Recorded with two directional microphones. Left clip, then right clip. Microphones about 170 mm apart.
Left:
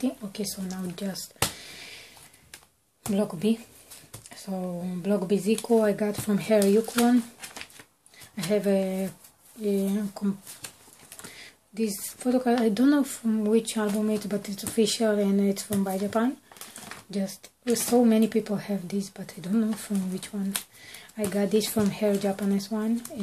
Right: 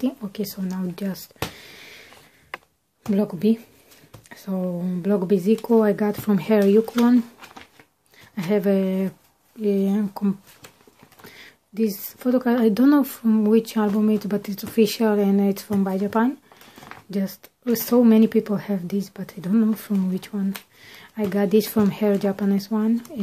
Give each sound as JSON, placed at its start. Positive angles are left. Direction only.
{"t": 0.0, "sound": "speech", "side_deg": -50}
{"t": 0.7, "sound": "a sound", "side_deg": -45}
{"t": 3.1, "sound": "speech", "side_deg": -50}
{"t": 8.5, "sound": "speech", "side_deg": -50}
{"t": 11.3, "sound": "speech", "side_deg": -50}